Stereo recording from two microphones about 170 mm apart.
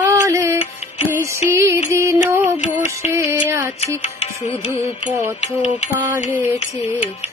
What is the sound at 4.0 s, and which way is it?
Music, 45° left (ahead or behind).